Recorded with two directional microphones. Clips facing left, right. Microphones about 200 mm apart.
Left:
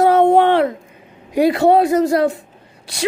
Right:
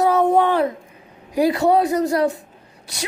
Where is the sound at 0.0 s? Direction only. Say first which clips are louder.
Left 4 dB; 30° left (ahead or behind).